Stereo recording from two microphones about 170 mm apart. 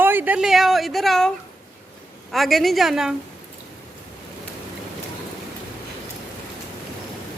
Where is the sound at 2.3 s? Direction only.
Centre (ahead or behind).